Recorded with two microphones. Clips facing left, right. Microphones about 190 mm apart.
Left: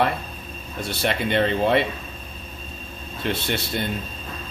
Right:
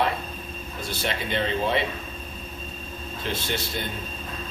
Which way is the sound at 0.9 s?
65° left (ahead or behind).